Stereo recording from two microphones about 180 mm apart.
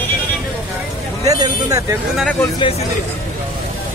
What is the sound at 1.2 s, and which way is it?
Speech, 20° right (ahead or behind).